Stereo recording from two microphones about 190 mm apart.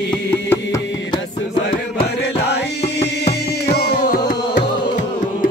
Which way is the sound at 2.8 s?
60° left (ahead or behind).